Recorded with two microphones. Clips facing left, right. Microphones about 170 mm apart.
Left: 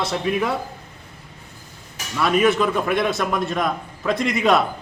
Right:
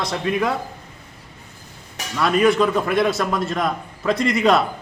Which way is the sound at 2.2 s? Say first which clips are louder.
Right 1 dB; centre (ahead or behind).